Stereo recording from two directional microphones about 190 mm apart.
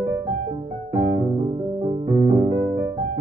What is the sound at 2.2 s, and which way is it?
Music, 25° right (ahead or behind).